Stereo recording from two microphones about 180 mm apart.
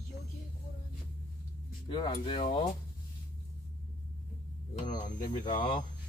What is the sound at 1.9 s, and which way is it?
Speech, 25° left (ahead or behind).